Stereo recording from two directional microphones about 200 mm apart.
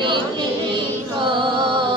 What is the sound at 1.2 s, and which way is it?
Music, 25° right (ahead or behind).